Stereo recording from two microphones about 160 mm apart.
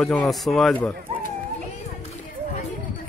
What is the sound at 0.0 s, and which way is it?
Speech, 5° left (ahead or behind).